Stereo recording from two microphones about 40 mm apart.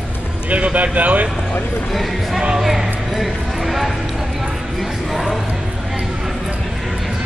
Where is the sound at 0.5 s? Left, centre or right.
Right.